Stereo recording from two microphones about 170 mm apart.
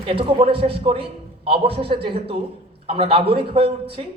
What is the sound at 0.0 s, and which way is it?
A man's voice, 30° right (ahead or behind).